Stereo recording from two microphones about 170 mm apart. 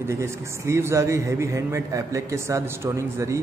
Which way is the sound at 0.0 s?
15° right (ahead or behind).